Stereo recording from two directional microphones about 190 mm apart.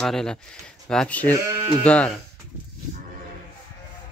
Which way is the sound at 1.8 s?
5° left (ahead or behind).